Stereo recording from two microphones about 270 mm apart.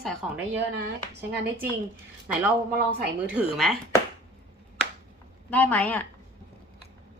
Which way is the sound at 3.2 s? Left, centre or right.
Centre.